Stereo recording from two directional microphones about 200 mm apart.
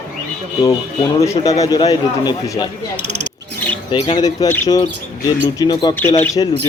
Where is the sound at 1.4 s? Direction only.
15° left (ahead or behind).